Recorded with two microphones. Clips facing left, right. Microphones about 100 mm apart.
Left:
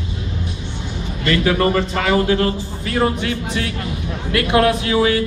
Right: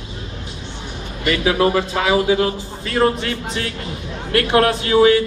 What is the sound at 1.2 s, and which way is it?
A man's voice, 10° right (ahead or behind).